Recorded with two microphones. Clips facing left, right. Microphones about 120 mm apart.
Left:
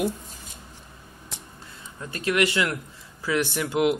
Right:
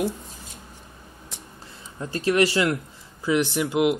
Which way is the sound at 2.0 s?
30° right (ahead or behind).